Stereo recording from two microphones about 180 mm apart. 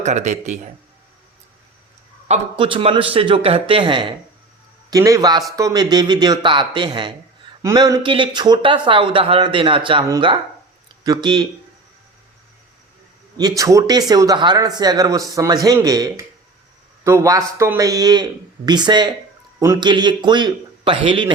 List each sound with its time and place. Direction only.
0.0 s speech: 40° right (ahead or behind)
2.2 s speech: 35° right (ahead or behind)
13.6 s speech: 20° right (ahead or behind)